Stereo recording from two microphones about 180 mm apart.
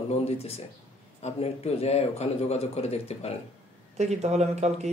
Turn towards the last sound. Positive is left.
turn(degrees=-40)  # may be behind; listen again after turning